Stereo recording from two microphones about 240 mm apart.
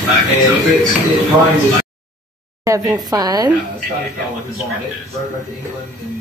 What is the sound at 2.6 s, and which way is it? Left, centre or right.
Speech, centre.